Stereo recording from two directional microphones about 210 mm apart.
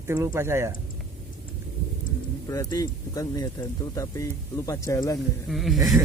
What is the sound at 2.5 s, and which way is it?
Speech, 15° left (ahead or behind).